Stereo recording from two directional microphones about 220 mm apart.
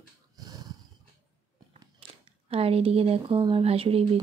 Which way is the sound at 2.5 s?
25° right (ahead or behind).